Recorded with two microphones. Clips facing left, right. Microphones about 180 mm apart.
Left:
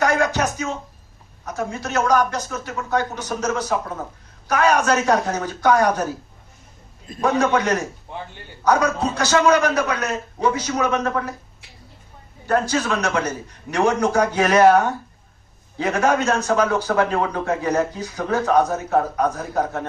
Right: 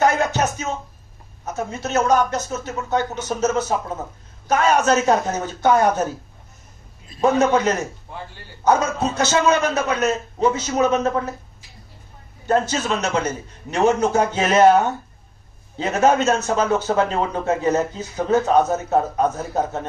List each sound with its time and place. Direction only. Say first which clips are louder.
0.0 s music: right 1 dB; 25° right (ahead or behind)
1.4 s a man's voice: even; 25° right (ahead or behind)
7.2 s a man's voice: right 2 dB; 25° right (ahead or behind)
12.4 s a man's voice: even; 25° right (ahead or behind)
15.8 s a man's voice: right 2 dB; 25° right (ahead or behind)